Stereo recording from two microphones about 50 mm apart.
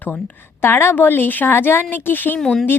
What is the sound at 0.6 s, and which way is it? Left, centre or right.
Speech, left.